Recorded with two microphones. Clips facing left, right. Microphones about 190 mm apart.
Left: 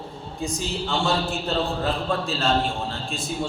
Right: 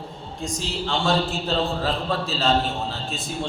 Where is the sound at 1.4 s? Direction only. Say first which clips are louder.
Right 1 dB; centre (ahead or behind).